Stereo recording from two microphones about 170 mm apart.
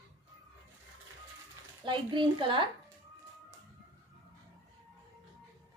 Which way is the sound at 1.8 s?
30° right (ahead or behind).